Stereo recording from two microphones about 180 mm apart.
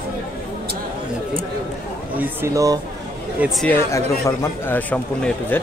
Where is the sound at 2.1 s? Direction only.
10° right (ahead or behind).